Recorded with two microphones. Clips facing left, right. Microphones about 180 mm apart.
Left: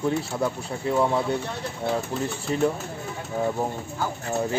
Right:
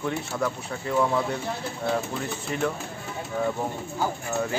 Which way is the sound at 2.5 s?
30° left (ahead or behind).